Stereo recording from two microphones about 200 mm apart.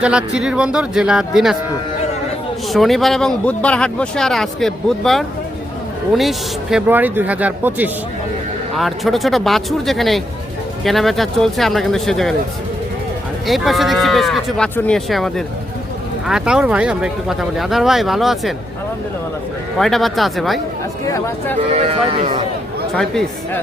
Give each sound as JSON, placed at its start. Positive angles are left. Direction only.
{"t": 0.0, "sound": "speech", "side_deg": -5}
{"t": 2.7, "sound": "speech", "side_deg": 0}
{"t": 13.5, "sound": "speech", "side_deg": 0}
{"t": 19.8, "sound": "speech", "side_deg": 0}
{"t": 21.1, "sound": "speech", "side_deg": 15}
{"t": 21.7, "sound": "speech", "side_deg": -30}